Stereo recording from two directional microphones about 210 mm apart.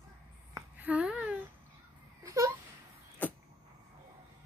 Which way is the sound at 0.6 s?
5° right (ahead or behind).